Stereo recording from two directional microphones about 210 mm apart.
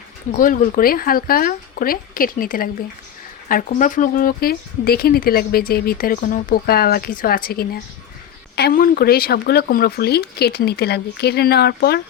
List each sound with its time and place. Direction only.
0.3 s speech: 40° left (ahead or behind)